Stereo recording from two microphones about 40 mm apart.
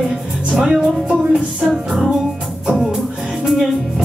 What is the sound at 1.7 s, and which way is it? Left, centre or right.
Music, centre.